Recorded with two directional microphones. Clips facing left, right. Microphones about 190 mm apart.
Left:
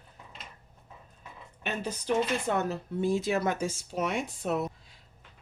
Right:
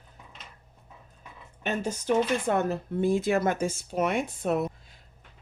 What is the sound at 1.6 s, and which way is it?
Speech, 45° right (ahead or behind).